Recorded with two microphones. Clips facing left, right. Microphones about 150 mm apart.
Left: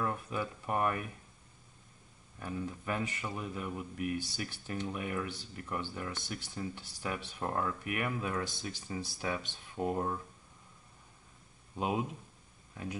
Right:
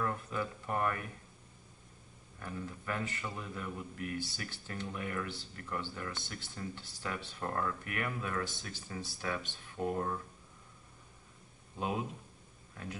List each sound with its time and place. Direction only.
0.0 s speech: 15° left (ahead or behind)
2.4 s speech: 20° left (ahead or behind)